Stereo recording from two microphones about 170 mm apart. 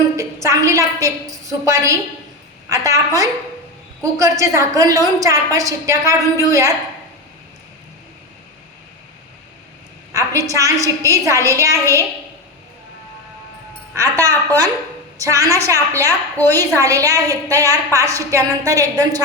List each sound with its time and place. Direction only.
0.2 s a woman's voice: 15° right (ahead or behind)
10.1 s a woman's voice: 20° right (ahead or behind)
13.9 s a woman's voice: 20° right (ahead or behind)